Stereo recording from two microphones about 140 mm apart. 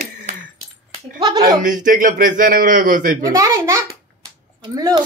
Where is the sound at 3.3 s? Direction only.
25° right (ahead or behind).